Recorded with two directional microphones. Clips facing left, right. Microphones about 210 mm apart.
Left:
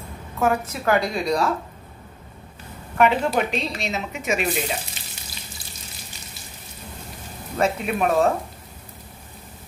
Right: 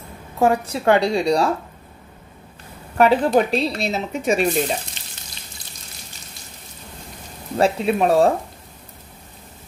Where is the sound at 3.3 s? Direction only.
35° right (ahead or behind).